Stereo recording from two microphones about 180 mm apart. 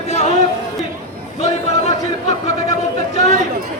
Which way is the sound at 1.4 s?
35° left (ahead or behind).